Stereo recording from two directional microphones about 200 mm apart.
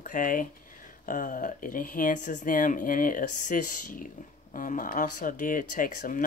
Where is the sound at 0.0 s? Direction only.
40° left (ahead or behind).